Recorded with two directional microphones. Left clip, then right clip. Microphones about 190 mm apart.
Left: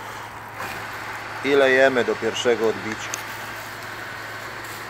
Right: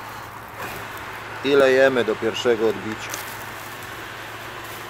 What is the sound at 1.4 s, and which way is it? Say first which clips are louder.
Speech: right 1 dB; 15° right (ahead or behind).